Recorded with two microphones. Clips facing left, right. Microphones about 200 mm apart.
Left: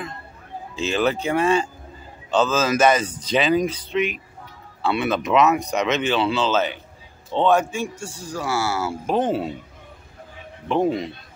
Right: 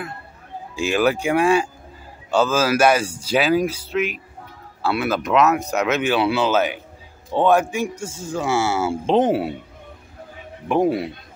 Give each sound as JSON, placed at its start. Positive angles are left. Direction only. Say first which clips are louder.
{"t": 0.7, "sound": "speech", "louder": "right 2 dB", "side_deg": -10}
{"t": 10.7, "sound": "speech", "louder": "right 2 dB", "side_deg": -10}